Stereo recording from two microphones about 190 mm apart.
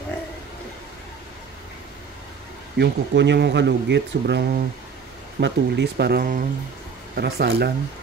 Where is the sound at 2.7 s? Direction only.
65° right (ahead or behind).